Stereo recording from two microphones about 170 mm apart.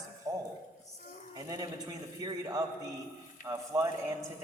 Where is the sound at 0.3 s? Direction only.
20° right (ahead or behind).